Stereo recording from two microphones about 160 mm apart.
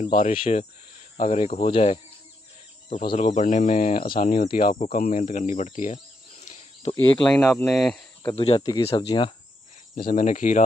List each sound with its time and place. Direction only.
0.0 s speech: 55° left (ahead or behind); by 2.0 s 40° left (ahead or behind)
3.2 s speech: 50° left (ahead or behind)
4.0 s speech: 65° left (ahead or behind)
6.4 s a sound: 45° left (ahead or behind)
7.2 s speech: 5° left (ahead or behind)
8.4 s speech: 35° left (ahead or behind)
9.9 s speech: 60° left (ahead or behind)